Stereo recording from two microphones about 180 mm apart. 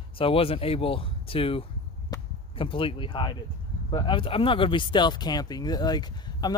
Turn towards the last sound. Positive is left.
turn(degrees=20)  # may be behind; listen again after turning